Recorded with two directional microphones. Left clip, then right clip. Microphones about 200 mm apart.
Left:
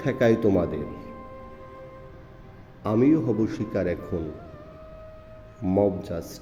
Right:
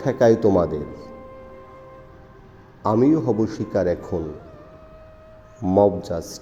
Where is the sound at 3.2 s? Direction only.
10° right (ahead or behind).